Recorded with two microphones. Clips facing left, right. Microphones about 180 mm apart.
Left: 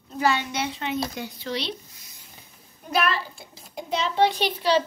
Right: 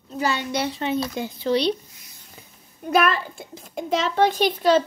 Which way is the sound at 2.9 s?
50° right (ahead or behind).